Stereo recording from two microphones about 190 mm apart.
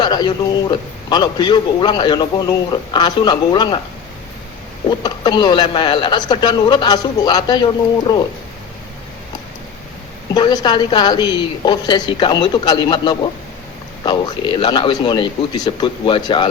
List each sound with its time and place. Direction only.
0.0 s a man's voice: 20° left (ahead or behind)
4.9 s speech: 20° left (ahead or behind)
10.3 s speech: 20° left (ahead or behind)